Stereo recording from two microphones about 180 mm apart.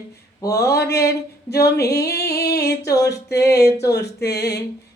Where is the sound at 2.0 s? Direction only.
60° left (ahead or behind).